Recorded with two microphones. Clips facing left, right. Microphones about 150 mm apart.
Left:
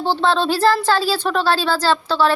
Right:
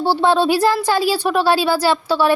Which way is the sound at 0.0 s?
10° right (ahead or behind).